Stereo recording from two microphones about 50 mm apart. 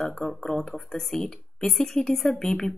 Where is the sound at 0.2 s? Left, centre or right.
Left.